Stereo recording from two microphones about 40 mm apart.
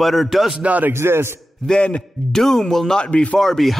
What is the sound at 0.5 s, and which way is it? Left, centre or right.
Speech, right.